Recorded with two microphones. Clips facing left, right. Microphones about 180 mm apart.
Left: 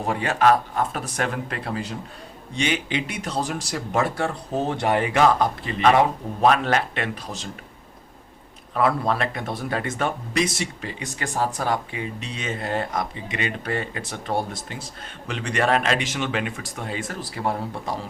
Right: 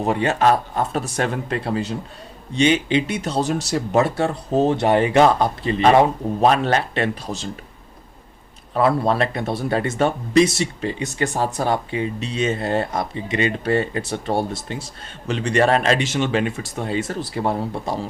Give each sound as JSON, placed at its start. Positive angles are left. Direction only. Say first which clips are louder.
{"t": 0.1, "sound": "speech", "louder": "right 1 dB", "side_deg": -25}
{"t": 8.7, "sound": "speech", "louder": "right 4 dB", "side_deg": -30}